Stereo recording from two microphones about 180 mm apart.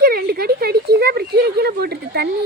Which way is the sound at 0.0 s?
60° right (ahead or behind).